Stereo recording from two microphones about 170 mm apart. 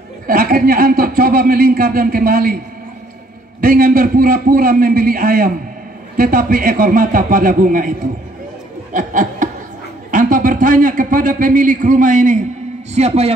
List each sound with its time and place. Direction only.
0.3 s speech: 55° right (ahead or behind)
3.6 s speech: 55° right (ahead or behind)
8.9 s chuckle: 50° right (ahead or behind)
10.1 s a man's voice: 50° right (ahead or behind)